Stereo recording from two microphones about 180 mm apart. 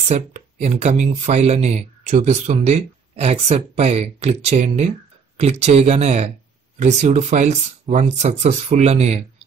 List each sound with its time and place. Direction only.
0.1 s speech: 40° right (ahead or behind)